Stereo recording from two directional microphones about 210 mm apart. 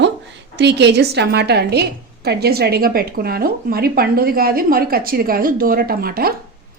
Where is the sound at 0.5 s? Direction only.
55° right (ahead or behind).